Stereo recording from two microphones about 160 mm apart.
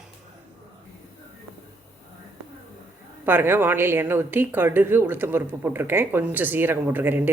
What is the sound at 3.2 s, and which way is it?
A woman's voice, 15° right (ahead or behind).